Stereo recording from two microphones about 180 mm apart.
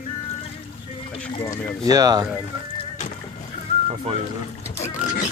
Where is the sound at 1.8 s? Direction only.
20° right (ahead or behind).